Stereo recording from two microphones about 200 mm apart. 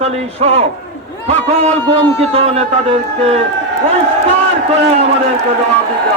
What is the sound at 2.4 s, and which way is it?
A man's voice, 30° right (ahead or behind).